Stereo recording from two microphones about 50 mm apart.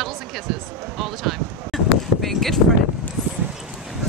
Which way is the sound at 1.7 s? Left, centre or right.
Centre.